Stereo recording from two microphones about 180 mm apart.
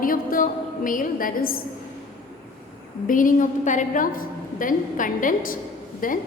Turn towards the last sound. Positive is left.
turn(degrees=50)  # may be behind; listen again after turning